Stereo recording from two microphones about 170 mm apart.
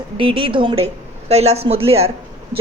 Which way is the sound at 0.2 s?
30° right (ahead or behind).